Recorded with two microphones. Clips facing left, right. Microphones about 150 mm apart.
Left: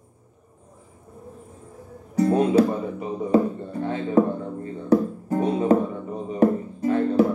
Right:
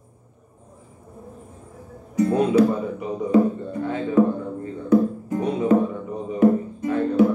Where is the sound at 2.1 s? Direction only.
30° left (ahead or behind).